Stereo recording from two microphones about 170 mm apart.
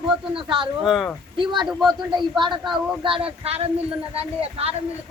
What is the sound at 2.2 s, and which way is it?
Child singing, 25° right (ahead or behind).